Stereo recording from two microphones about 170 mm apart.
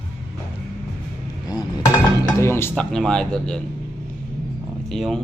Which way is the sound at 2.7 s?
5° left (ahead or behind).